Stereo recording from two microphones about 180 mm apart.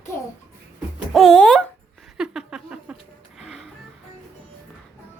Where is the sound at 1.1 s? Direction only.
Centre (ahead or behind).